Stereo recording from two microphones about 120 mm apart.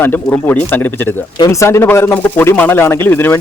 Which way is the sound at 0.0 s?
15° left (ahead or behind).